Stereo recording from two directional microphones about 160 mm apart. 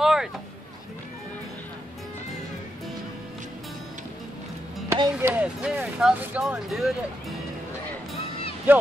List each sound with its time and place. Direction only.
0.0 s a sound: centre (ahead or behind)
4.9 s music: 25° right (ahead or behind)
5.3 s speech: 10° right (ahead or behind)